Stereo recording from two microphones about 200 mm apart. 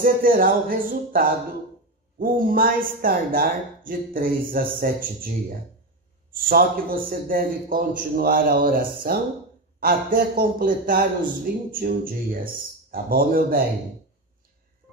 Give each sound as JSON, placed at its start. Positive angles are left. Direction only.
{"t": 0.0, "sound": "speech", "side_deg": -45}
{"t": 6.3, "sound": "speech", "side_deg": -45}